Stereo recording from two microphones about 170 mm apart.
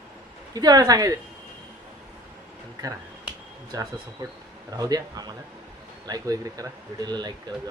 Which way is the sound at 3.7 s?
20° right (ahead or behind).